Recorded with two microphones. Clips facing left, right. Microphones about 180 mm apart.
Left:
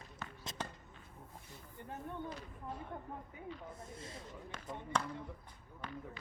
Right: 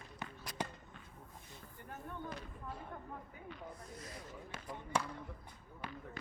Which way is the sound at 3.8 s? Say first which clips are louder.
Left 1 dB; 25° left (ahead or behind).